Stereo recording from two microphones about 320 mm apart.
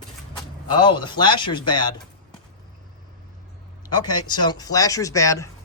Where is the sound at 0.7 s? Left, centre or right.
Centre.